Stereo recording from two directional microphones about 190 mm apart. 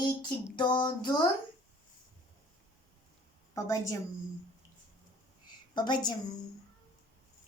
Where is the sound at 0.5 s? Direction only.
25° left (ahead or behind).